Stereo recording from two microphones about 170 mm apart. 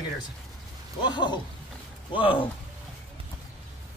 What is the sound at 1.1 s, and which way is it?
Speech, 25° left (ahead or behind).